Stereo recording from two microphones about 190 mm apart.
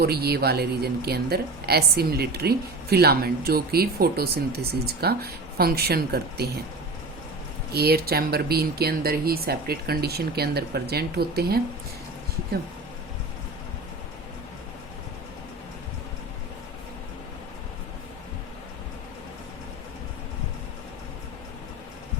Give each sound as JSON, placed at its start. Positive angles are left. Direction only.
{"t": 0.0, "sound": "a woman's voice", "side_deg": -55}
{"t": 7.7, "sound": "a woman's voice", "side_deg": -55}